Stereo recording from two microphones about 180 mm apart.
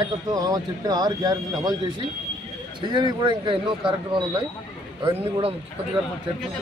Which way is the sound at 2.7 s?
25° right (ahead or behind).